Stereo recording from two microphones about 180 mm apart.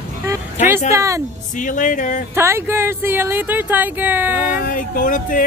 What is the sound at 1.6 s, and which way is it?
Speech, 45° left (ahead or behind).